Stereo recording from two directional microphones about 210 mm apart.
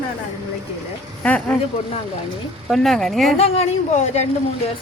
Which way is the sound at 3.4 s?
30° left (ahead or behind).